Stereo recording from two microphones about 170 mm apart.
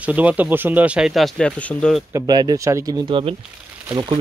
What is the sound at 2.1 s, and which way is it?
Speech, 20° right (ahead or behind).